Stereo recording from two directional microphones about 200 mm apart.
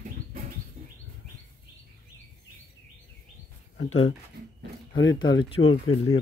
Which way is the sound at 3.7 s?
90° left.